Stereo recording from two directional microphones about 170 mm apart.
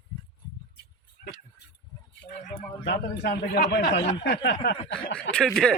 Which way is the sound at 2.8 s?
80° left.